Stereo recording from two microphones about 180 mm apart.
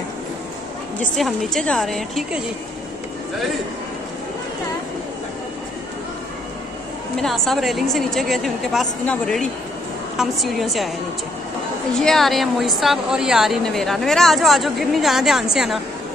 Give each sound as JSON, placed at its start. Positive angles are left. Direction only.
{"t": 1.1, "sound": "a woman's voice", "side_deg": 0}
{"t": 7.2, "sound": "a woman's voice", "side_deg": 0}
{"t": 12.0, "sound": "a woman's voice", "side_deg": 0}